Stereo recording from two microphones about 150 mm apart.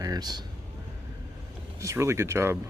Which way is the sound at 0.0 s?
25° right (ahead or behind).